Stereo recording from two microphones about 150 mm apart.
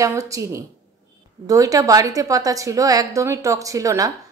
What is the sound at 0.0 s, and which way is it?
A woman's voice, 20° right (ahead or behind).